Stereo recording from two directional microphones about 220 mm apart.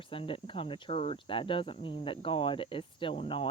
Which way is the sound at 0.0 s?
25° left (ahead or behind).